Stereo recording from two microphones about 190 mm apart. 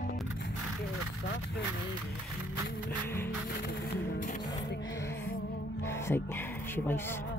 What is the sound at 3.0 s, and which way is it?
Music, 15° left (ahead or behind).